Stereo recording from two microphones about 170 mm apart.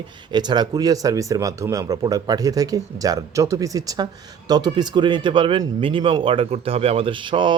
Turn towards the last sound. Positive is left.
turn(degrees=-30)  # may be behind; listen again after turning